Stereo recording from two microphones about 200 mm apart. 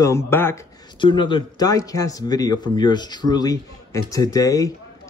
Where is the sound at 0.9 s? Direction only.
25° left (ahead or behind).